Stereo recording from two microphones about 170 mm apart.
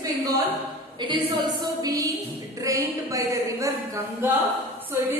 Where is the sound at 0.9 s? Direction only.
25° right (ahead or behind).